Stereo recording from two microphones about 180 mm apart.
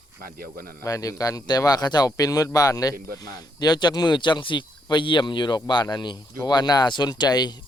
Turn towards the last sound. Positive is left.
turn(degrees=25)  # may be behind; listen again after turning